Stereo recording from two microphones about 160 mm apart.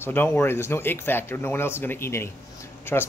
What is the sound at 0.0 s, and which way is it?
Speech, 10° left (ahead or behind).